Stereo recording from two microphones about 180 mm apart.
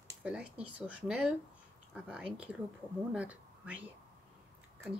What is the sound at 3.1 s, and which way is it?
Speech, 5° right (ahead or behind).